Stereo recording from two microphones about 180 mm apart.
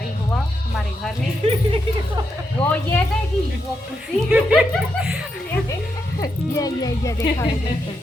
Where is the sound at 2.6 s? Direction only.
10° left (ahead or behind).